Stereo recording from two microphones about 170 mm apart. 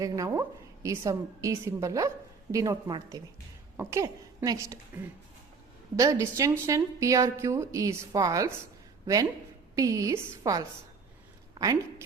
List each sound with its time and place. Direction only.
0.0 s a woman's voice: 20° right (ahead or behind)
6.0 s a woman's voice: 20° right (ahead or behind)
9.7 s a woman's voice: 20° right (ahead or behind)